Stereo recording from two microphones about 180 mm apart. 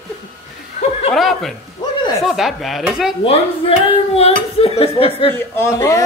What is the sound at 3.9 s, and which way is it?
Speech, 35° left (ahead or behind).